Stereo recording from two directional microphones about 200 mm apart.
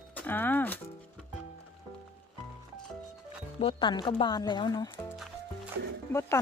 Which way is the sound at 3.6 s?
25° left (ahead or behind).